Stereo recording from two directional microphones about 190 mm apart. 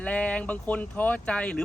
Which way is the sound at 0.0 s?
5° left (ahead or behind).